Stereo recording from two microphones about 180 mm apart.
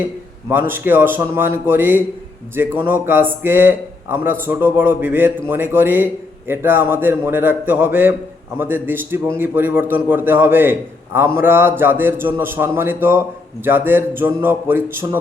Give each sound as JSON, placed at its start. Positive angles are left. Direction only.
{"t": 0.5, "sound": "a man's voice", "side_deg": -10}